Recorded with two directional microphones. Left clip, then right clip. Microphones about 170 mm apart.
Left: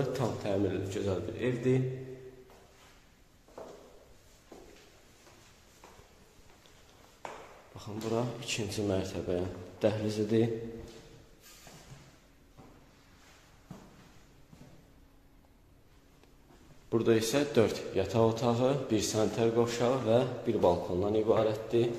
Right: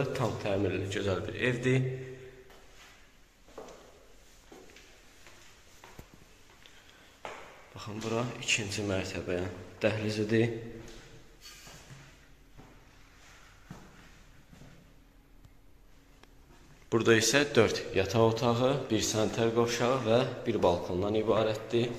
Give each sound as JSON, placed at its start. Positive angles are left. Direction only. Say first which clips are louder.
{"t": 0.0, "sound": "a man's voice", "louder": "right 1 dB", "side_deg": 10}
{"t": 7.7, "sound": "speech", "louder": "even", "side_deg": 10}
{"t": 8.4, "sound": "a man's voice", "louder": "right 4 dB", "side_deg": 25}
{"t": 16.9, "sound": "a man's voice", "louder": "right 3 dB", "side_deg": 0}